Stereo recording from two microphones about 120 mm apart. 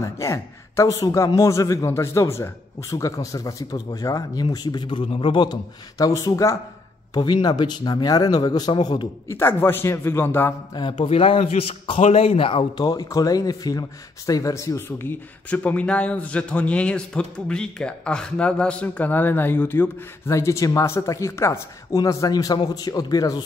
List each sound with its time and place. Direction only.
0.0 s speech: 25° left (ahead or behind)
7.2 s a man's voice: 35° left (ahead or behind)
9.3 s speech: 20° left (ahead or behind)
10.7 s speech: 40° left (ahead or behind)
12.8 s speech: 30° left (ahead or behind)